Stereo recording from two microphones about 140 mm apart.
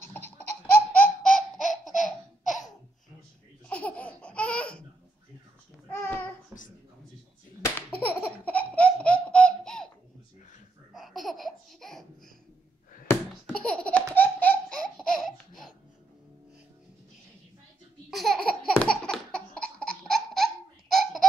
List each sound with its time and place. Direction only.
0.9 s laughter: 10° left (ahead or behind)
3.6 s laughter: 10° left (ahead or behind)
5.9 s child singing: 15° left (ahead or behind)
7.6 s baby laughter: 15° left (ahead or behind)
10.9 s laughter: centre (ahead or behind)
13.5 s laughter: 10° left (ahead or behind)
15.0 s laughter: centre (ahead or behind)
18.1 s laughter: centre (ahead or behind)
20.9 s baby laughter: centre (ahead or behind)